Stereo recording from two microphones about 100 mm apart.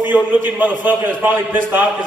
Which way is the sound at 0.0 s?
15° right (ahead or behind).